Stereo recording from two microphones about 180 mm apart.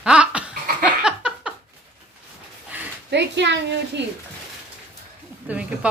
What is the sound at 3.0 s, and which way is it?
Speech, 75° right (ahead or behind).